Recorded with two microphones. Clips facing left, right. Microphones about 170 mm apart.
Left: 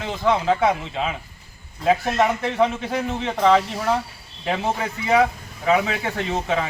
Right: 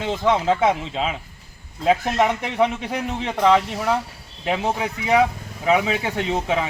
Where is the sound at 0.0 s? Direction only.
25° right (ahead or behind).